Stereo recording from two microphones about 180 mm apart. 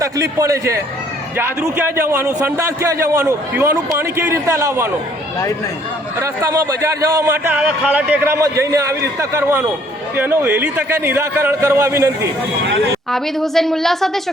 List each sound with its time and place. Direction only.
0.0 s a man's voice: 20° right (ahead or behind)
6.1 s a man's voice: 15° right (ahead or behind)
13.1 s a woman's voice: centre (ahead or behind)